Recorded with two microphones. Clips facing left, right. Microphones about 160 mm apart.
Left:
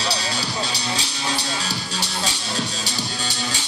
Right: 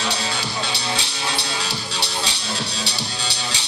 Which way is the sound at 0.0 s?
40° left (ahead or behind).